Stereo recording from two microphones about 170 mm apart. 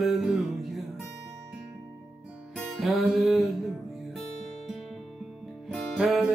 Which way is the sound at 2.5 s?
Centre (ahead or behind).